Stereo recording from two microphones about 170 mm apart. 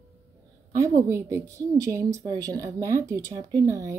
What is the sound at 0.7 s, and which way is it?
A woman's voice, 20° right (ahead or behind).